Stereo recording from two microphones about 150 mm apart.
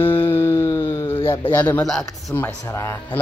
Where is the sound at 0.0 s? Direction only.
15° left (ahead or behind).